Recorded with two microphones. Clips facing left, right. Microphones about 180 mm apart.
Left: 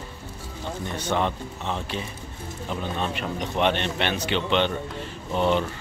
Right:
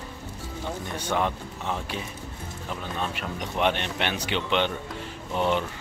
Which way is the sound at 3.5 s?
10° right (ahead or behind).